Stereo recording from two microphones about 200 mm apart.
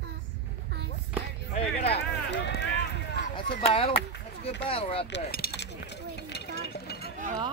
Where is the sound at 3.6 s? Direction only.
30° left (ahead or behind).